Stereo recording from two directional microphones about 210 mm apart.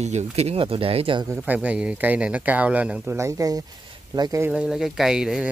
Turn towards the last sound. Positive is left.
turn(degrees=-5)  # may be behind; listen again after turning